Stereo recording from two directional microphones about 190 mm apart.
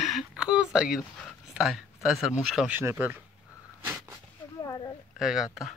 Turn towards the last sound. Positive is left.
turn(degrees=0)  # may be behind; listen again after turning